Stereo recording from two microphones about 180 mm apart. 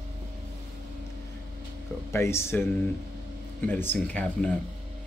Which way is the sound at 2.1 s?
15° left (ahead or behind).